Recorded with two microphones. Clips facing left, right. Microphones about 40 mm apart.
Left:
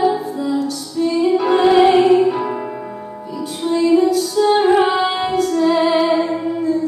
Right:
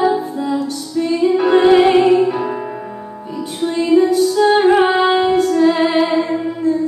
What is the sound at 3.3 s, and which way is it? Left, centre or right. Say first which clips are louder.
Music: right 1 dB; right.